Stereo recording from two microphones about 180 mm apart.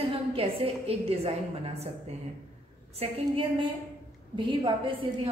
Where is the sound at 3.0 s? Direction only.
30° right (ahead or behind).